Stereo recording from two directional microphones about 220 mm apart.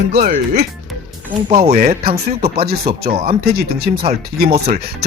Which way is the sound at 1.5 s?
25° right (ahead or behind).